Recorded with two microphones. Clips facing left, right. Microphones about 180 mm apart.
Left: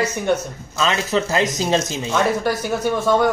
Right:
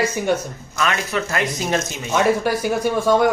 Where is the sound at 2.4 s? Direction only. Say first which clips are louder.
Right 1 dB; 10° right (ahead or behind).